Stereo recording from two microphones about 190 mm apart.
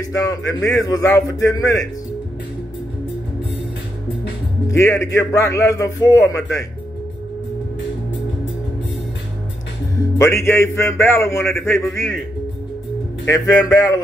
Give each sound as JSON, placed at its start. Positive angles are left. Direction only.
{"t": 0.0, "sound": "a man's voice", "side_deg": 20}
{"t": 4.6, "sound": "a man's voice", "side_deg": 15}
{"t": 10.1, "sound": "a man's voice", "side_deg": 15}
{"t": 13.2, "sound": "a man's voice", "side_deg": 10}